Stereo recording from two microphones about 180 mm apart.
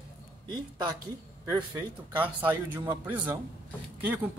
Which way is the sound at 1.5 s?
15° right (ahead or behind).